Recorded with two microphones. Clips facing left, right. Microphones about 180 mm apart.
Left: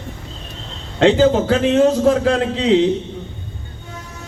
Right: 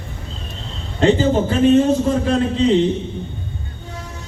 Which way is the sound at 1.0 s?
90° left.